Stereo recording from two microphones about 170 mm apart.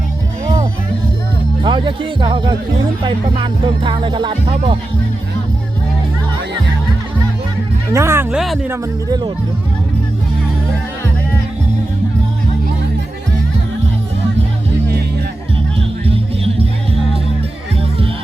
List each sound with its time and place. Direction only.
1.6 s speech: 30° right (ahead or behind)
3.0 s music: 25° right (ahead or behind)
7.9 s a sound: 15° right (ahead or behind)
8.4 s music: centre (ahead or behind)
8.7 s speech: 25° right (ahead or behind)
16.0 s music: 35° right (ahead or behind)